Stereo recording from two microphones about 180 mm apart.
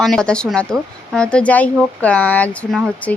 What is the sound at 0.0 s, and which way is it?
Speech, centre (ahead or behind).